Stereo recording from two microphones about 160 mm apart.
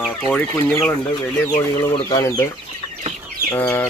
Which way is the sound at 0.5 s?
20° left (ahead or behind).